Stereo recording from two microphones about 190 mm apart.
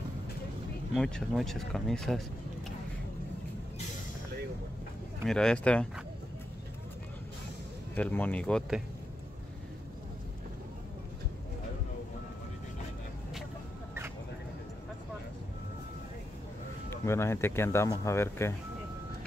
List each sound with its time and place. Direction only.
0.9 s speech: 5° left (ahead or behind)
5.2 s speech: 5° left (ahead or behind)
7.9 s speech: 10° left (ahead or behind)
17.0 s speech: 15° left (ahead or behind)